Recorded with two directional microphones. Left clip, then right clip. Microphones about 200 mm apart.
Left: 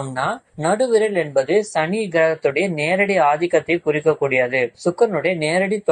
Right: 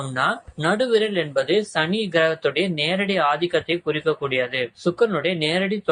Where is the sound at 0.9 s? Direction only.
10° left (ahead or behind).